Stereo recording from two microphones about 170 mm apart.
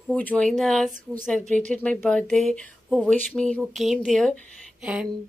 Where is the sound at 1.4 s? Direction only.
45° right (ahead or behind).